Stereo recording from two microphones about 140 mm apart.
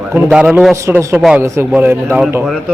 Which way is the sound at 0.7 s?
20° right (ahead or behind).